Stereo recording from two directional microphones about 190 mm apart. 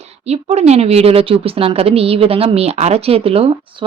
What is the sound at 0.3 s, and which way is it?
A woman's voice, 35° right (ahead or behind).